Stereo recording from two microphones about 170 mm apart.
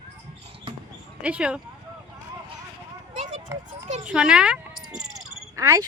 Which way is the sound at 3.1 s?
45° right (ahead or behind).